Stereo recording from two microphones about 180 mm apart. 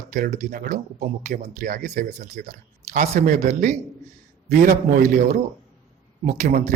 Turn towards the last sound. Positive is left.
turn(degrees=-40)  # may be behind; listen again after turning